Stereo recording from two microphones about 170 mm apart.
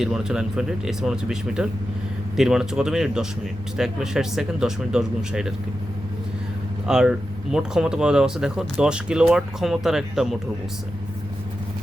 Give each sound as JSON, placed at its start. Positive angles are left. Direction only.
{"t": 0.0, "sound": "speech", "side_deg": -5}
{"t": 6.8, "sound": "speech", "side_deg": -5}